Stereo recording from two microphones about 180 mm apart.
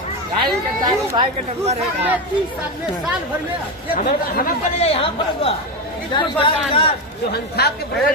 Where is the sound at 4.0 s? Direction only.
50° left (ahead or behind).